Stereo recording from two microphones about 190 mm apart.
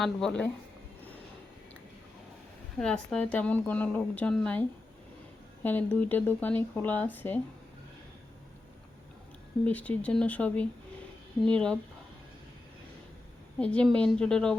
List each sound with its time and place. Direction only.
0.0 s a woman's voice: 5° left (ahead or behind)
2.7 s speech: 5° left (ahead or behind)
5.6 s speech: 10° left (ahead or behind)
9.6 s a woman's voice: 10° left (ahead or behind)
13.6 s a woman's voice: 5° left (ahead or behind)